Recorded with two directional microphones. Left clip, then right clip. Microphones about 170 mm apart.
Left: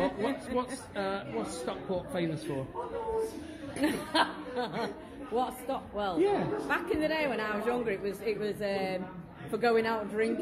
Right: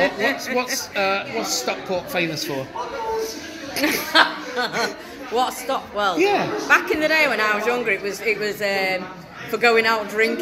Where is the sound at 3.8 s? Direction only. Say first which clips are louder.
Right 12 dB; 10° left (ahead or behind).